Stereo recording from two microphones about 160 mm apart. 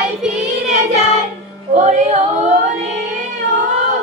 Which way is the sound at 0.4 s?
45° right (ahead or behind).